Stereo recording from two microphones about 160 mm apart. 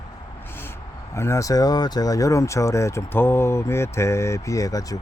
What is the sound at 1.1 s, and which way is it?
Speech, 15° left (ahead or behind).